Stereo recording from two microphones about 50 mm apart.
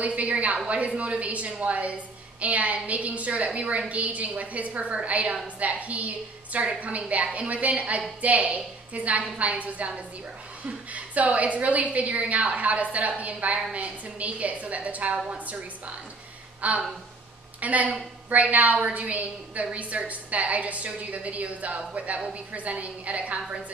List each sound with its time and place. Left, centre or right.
0.0 s a woman's voice: right
16.6 s a woman's voice: right